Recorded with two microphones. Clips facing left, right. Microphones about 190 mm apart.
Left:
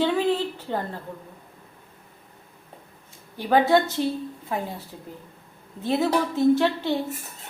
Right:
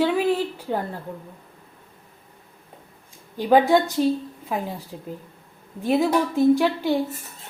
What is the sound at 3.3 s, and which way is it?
A woman's voice, 15° right (ahead or behind).